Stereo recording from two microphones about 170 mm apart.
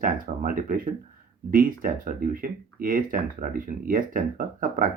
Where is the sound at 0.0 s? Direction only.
55° right (ahead or behind).